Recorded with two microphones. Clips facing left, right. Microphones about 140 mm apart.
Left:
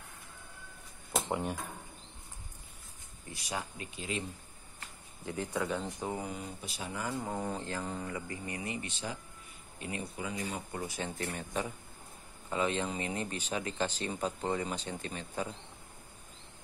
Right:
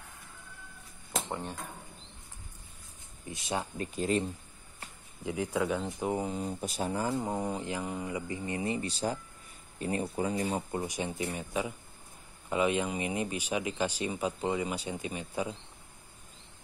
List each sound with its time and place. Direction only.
1.1 s a sound: 10° left (ahead or behind)
3.3 s speech: 25° right (ahead or behind)
3.7 s speech: 40° right (ahead or behind)
5.2 s speech: 10° right (ahead or behind)
6.4 s speech: 45° right (ahead or behind)
7.2 s speech: 15° right (ahead or behind); by 10.6 s 40° right (ahead or behind)
10.7 s speech: 20° right (ahead or behind)